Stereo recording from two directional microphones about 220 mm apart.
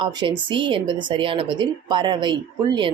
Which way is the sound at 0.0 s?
20° right (ahead or behind).